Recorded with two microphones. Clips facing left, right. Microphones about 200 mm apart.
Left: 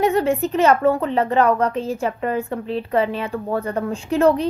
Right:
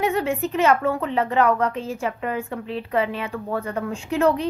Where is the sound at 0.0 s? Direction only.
40° left (ahead or behind).